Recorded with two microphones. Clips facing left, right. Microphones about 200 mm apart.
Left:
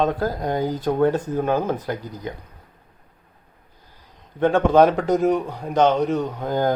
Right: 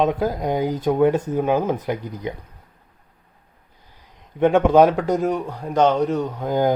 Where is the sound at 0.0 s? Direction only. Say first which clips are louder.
Right 2 dB; 15° right (ahead or behind).